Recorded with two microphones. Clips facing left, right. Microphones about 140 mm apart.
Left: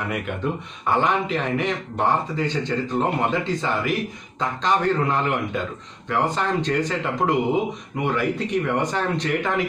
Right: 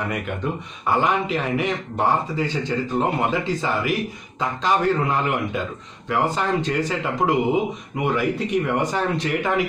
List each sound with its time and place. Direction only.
0.8 s speech: 5° right (ahead or behind)